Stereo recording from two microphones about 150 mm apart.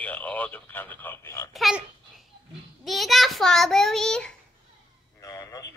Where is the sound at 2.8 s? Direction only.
Centre (ahead or behind).